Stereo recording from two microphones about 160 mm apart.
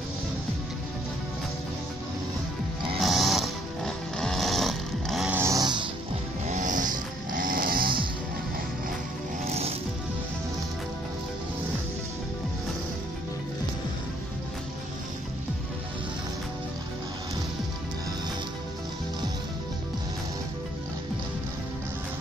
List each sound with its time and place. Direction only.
3.0 s music: centre (ahead or behind)
5.3 s a sound: 20° right (ahead or behind)
6.4 s snoring: 50° right (ahead or behind); by 8.0 s 65° right (ahead or behind)
9.5 s music: 40° right (ahead or behind)